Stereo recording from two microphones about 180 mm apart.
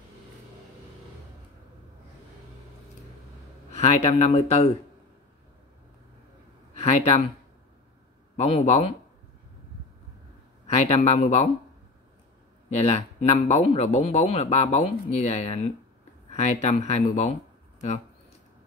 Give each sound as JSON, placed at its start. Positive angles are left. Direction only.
{"t": 3.7, "sound": "speech", "side_deg": 35}
{"t": 6.7, "sound": "a sound", "side_deg": 35}
{"t": 8.4, "sound": "speech", "side_deg": 35}
{"t": 10.7, "sound": "speech", "side_deg": 35}
{"t": 12.6, "sound": "speech", "side_deg": 35}
{"t": 16.3, "sound": "a sound", "side_deg": 40}
{"t": 16.6, "sound": "speech", "side_deg": 40}